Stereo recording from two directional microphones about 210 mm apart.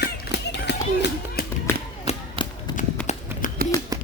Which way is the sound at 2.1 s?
30° left (ahead or behind).